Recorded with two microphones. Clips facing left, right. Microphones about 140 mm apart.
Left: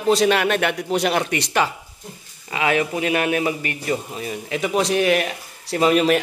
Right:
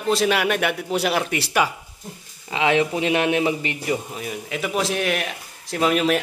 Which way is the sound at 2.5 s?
25° right (ahead or behind).